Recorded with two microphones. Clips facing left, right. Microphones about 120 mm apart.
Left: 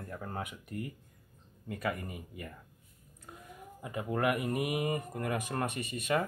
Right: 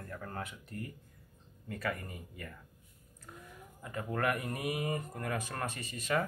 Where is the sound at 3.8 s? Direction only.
15° left (ahead or behind).